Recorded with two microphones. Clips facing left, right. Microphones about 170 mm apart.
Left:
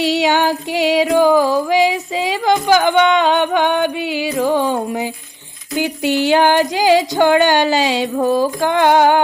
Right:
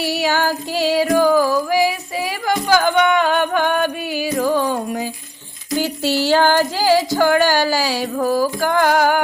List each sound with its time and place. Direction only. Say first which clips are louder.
0.0 s music: left 4 dB; 20° left (ahead or behind)
5.7 s female singing: left 2 dB; 15° left (ahead or behind)